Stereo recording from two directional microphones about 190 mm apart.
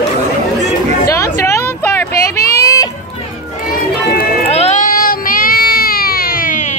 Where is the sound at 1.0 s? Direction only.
15° left (ahead or behind).